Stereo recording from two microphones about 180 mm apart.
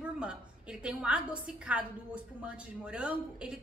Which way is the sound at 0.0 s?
5° right (ahead or behind).